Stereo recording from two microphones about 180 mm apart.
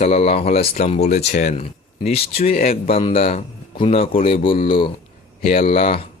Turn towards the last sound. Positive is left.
turn(degrees=35)  # may be behind; listen again after turning